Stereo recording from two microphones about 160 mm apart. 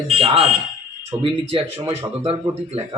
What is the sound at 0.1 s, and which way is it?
Fire alarm, 40° right (ahead or behind).